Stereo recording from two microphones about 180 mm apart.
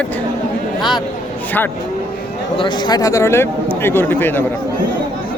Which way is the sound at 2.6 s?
25° left (ahead or behind).